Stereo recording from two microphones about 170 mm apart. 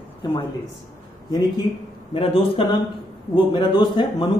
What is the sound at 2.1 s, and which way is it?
A man's voice, 35° left (ahead or behind).